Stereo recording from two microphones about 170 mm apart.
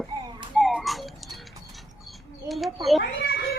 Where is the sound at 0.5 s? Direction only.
Centre (ahead or behind).